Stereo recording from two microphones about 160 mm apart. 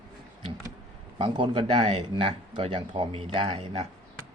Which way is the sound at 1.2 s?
30° right (ahead or behind).